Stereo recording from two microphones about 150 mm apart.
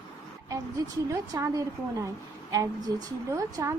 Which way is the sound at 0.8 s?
25° right (ahead or behind).